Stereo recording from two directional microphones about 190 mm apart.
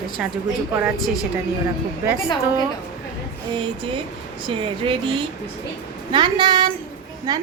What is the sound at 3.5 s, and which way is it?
Speech, 25° right (ahead or behind).